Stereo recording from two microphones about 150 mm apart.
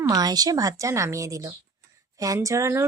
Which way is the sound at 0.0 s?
25° right (ahead or behind).